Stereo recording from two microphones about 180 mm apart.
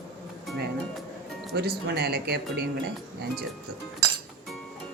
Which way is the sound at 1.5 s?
60° right (ahead or behind).